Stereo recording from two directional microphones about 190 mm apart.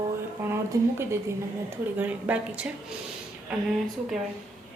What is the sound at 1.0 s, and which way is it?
A woman's voice, 15° right (ahead or behind).